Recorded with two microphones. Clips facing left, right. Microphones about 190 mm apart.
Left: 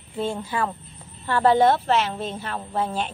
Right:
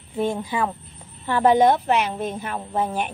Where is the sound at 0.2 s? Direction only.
15° right (ahead or behind).